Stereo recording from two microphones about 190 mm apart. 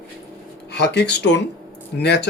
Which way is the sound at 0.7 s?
65° left (ahead or behind).